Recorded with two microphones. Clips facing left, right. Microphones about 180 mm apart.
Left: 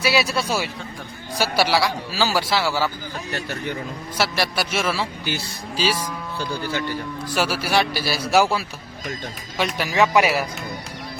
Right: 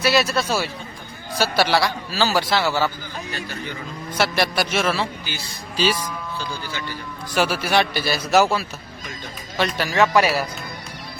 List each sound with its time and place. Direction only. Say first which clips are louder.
0.0 s a man's voice: right 2 dB; 10° left (ahead or behind)
4.2 s a man's voice: right 2 dB; 5° left (ahead or behind)
6.4 s speech: left 5 dB; 55° left (ahead or behind)
7.3 s a man's voice: right 2 dB; 5° left (ahead or behind)